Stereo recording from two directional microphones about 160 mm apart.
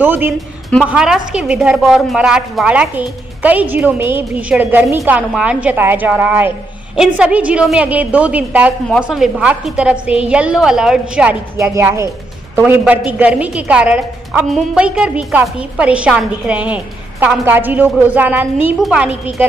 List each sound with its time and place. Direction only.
0.0 s a woman's voice: 10° right (ahead or behind)
11.5 s a woman's voice: 15° right (ahead or behind)